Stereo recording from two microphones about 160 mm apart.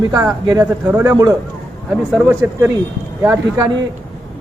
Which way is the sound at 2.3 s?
15° right (ahead or behind).